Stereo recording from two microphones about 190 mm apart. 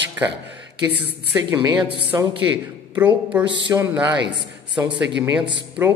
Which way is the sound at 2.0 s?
10° right (ahead or behind).